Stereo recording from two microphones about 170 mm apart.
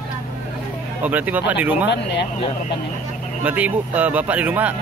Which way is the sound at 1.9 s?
85° left.